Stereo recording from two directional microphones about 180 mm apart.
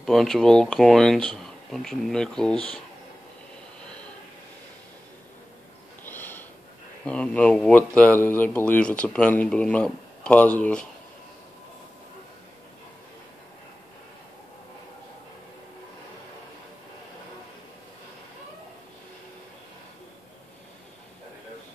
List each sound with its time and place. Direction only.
0.0 s speech: centre (ahead or behind)
6.0 s sniff: 10° left (ahead or behind)
7.1 s speech: 5° left (ahead or behind)